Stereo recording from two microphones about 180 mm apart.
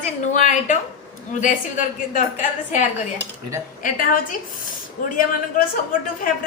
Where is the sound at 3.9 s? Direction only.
50° left (ahead or behind).